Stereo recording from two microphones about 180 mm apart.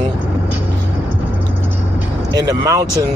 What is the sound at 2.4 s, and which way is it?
Speech, 20° right (ahead or behind).